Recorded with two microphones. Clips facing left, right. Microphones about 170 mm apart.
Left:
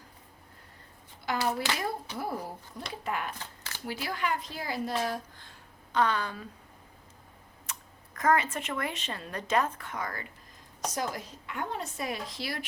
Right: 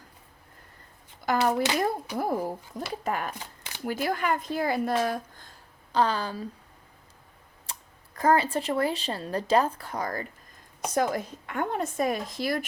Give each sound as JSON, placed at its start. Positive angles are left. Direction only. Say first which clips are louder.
{"t": 1.2, "sound": "a child's voice", "louder": "right 6 dB", "side_deg": -45}
{"t": 3.3, "sound": "a sound", "louder": "right 2 dB", "side_deg": -15}
{"t": 3.8, "sound": "speech", "louder": "right 6 dB", "side_deg": -50}
{"t": 7.7, "sound": "speech", "louder": "right 1 dB", "side_deg": -30}
{"t": 10.9, "sound": "a woman's voice", "louder": "right 10 dB", "side_deg": -55}